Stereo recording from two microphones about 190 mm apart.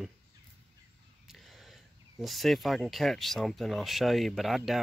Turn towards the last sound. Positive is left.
turn(degrees=0)  # may be behind; listen again after turning